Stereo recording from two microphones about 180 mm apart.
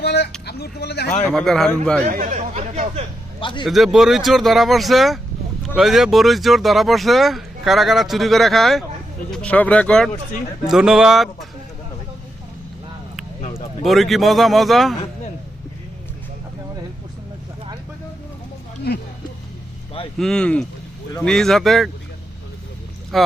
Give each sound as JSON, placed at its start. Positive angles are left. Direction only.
{"t": 0.0, "sound": "vehicle", "side_deg": 65}
{"t": 0.4, "sound": "speech", "side_deg": 65}
{"t": 1.2, "sound": "speech", "side_deg": 5}
{"t": 2.0, "sound": "speech", "side_deg": -45}
{"t": 3.4, "sound": "a man's voice", "side_deg": 25}
{"t": 3.7, "sound": "speech", "side_deg": 0}
{"t": 13.4, "sound": "a sound", "side_deg": 30}
{"t": 13.8, "sound": "speech", "side_deg": 0}
{"t": 20.1, "sound": "speech", "side_deg": 5}
{"t": 23.1, "sound": "speech", "side_deg": 0}